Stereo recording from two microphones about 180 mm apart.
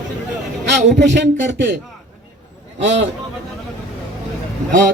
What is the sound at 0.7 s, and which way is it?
Speech, 75° right (ahead or behind).